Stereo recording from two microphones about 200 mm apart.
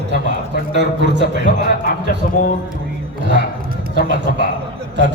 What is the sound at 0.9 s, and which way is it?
Speech, 60° right (ahead or behind).